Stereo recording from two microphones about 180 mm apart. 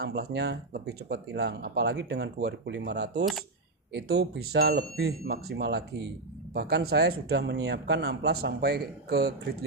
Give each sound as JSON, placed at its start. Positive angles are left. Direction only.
{"t": 0.0, "sound": "speech", "side_deg": -65}